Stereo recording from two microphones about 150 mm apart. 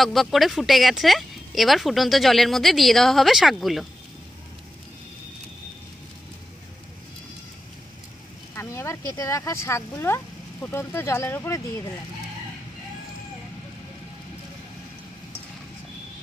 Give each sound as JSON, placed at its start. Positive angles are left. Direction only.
{"t": 0.0, "sound": "speech", "side_deg": 0}
{"t": 8.5, "sound": "speech", "side_deg": 20}